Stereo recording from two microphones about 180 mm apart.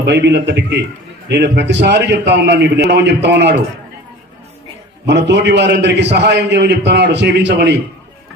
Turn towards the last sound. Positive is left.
turn(degrees=-70)  # may be behind; listen again after turning